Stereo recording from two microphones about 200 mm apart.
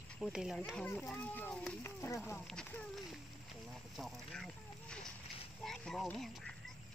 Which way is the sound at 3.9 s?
Centre (ahead or behind).